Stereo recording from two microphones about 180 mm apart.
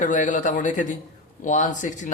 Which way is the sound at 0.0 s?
45° left (ahead or behind).